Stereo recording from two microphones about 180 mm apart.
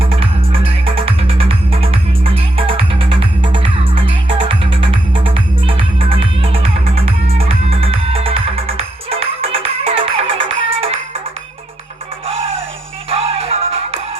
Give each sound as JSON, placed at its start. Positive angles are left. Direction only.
{"t": 0.0, "sound": "music", "side_deg": -30}
{"t": 12.2, "sound": "music", "side_deg": -30}